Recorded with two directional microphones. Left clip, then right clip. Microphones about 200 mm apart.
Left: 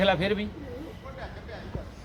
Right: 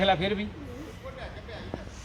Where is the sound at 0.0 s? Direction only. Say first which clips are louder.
Even; 20° left (ahead or behind).